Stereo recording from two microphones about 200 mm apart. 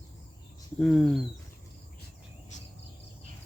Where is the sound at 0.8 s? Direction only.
Centre (ahead or behind).